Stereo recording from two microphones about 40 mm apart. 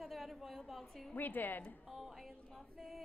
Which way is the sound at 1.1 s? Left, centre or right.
Left.